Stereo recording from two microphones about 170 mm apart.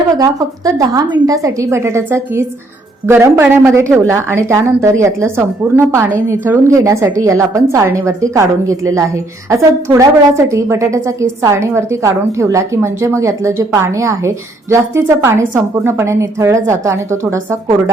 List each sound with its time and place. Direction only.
0.2 s a woman's voice: 20° right (ahead or behind)